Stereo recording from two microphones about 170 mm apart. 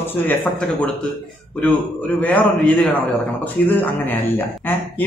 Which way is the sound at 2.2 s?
10° left (ahead or behind).